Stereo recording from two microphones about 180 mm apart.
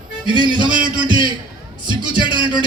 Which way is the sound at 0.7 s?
50° right (ahead or behind).